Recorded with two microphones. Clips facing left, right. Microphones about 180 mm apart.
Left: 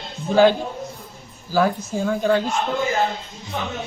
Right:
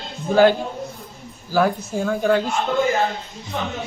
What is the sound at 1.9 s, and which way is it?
Speech, 15° right (ahead or behind).